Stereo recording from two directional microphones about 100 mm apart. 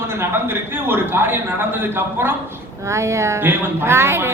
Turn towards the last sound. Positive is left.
turn(degrees=-25)  # may be behind; listen again after turning